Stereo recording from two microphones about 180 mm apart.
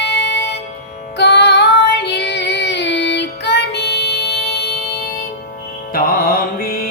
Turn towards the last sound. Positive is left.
turn(degrees=55)  # may be behind; listen again after turning